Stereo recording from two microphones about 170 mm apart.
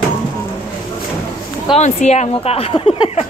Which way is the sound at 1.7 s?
40° left (ahead or behind).